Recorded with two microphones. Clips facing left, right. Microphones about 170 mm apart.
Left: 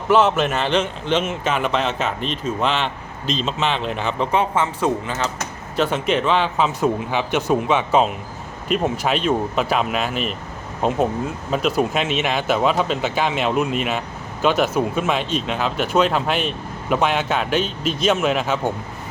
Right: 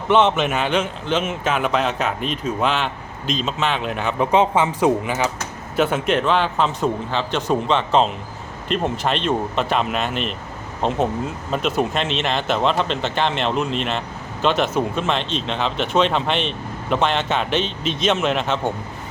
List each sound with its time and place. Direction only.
0.1 s speech: 5° left (ahead or behind)
4.3 s speech: 15° right (ahead or behind); by 18.7 s 5° left (ahead or behind)